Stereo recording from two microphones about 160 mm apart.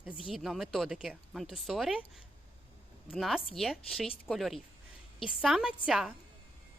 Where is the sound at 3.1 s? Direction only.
Centre (ahead or behind).